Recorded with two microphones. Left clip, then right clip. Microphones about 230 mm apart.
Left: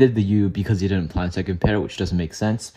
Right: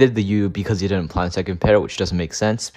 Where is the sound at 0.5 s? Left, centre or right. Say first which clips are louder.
Right 3 dB; right.